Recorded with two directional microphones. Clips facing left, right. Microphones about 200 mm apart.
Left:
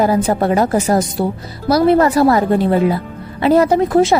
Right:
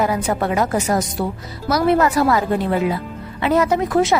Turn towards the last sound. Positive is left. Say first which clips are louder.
# left 4 dB
turn(degrees=30)  # may be behind; listen again after turning